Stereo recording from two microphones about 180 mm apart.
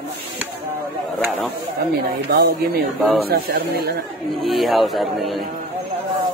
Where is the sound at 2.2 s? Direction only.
65° right (ahead or behind).